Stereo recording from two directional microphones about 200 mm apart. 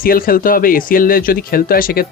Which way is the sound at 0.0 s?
45° left (ahead or behind).